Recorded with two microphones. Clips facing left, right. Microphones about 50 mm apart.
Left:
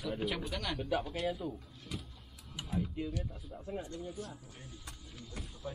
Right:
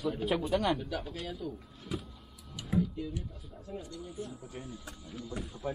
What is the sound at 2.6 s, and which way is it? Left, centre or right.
Mechanisms, left.